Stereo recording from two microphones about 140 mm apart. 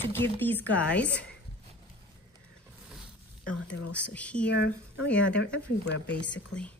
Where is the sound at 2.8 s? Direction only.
10° right (ahead or behind).